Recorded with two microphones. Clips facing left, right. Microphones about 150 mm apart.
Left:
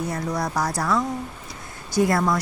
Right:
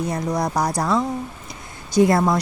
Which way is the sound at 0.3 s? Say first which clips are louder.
Right 4 dB; 20° right (ahead or behind).